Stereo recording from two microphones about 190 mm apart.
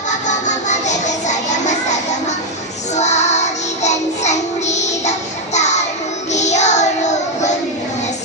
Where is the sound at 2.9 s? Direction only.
35° left (ahead or behind).